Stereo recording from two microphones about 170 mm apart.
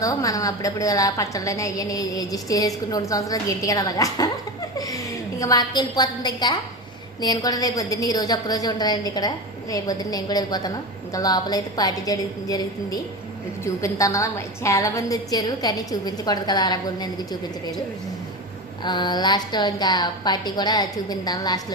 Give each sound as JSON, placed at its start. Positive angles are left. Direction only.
{"t": 0.0, "sound": "a woman's voice", "side_deg": 20}
{"t": 18.8, "sound": "a woman's voice", "side_deg": 25}